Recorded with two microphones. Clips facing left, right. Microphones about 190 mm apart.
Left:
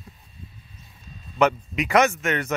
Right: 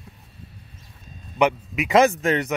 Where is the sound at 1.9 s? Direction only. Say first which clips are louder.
Right 3 dB; 30° right (ahead or behind).